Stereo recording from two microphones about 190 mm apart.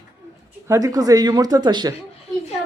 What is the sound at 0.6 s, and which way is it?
Speech, 20° right (ahead or behind).